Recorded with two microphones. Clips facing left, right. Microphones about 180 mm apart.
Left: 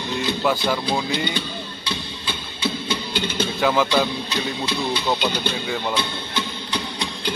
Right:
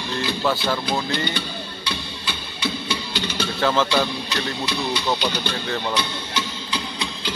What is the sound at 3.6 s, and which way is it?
Speech, 15° left (ahead or behind).